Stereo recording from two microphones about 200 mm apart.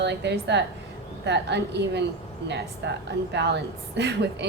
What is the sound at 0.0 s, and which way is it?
A woman's voice, 60° right (ahead or behind).